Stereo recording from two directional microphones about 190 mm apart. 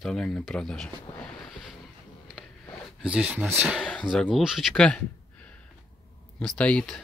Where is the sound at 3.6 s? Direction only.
Centre (ahead or behind).